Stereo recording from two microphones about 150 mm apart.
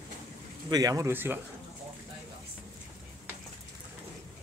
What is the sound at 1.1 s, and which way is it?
Speech, 15° right (ahead or behind).